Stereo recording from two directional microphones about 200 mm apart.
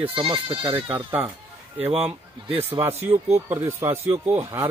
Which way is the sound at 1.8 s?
30° right (ahead or behind).